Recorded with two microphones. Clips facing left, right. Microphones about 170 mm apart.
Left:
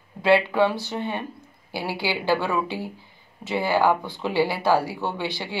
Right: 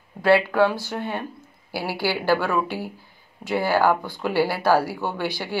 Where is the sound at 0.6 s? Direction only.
Centre (ahead or behind).